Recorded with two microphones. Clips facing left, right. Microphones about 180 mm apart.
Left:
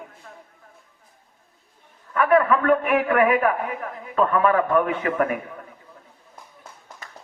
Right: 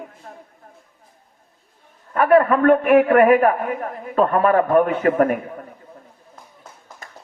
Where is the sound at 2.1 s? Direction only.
45° right (ahead or behind).